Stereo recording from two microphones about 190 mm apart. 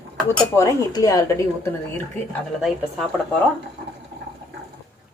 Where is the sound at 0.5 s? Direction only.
15° left (ahead or behind).